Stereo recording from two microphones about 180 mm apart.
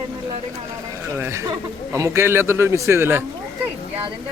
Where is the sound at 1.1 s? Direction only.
15° right (ahead or behind).